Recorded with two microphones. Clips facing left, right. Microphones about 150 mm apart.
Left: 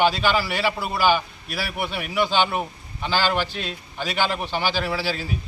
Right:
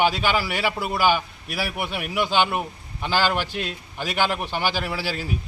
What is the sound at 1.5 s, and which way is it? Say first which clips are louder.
Speech: right 1 dB; 50° right (ahead or behind).